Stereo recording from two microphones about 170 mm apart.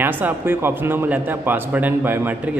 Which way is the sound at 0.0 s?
10° right (ahead or behind).